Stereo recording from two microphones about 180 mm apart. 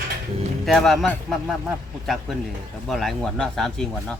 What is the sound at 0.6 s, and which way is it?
Speech, centre (ahead or behind).